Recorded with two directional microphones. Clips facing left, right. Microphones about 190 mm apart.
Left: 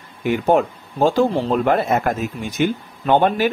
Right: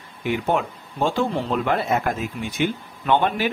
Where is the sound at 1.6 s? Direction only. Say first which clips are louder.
Left 4 dB; 45° left (ahead or behind).